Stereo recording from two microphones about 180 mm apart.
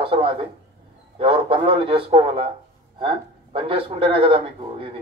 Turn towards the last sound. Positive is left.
turn(degrees=-30)  # may be behind; listen again after turning